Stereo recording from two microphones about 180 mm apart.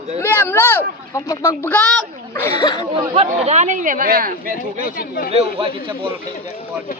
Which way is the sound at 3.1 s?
35° right (ahead or behind).